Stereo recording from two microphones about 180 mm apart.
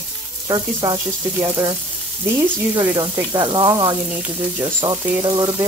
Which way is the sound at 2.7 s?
25° right (ahead or behind).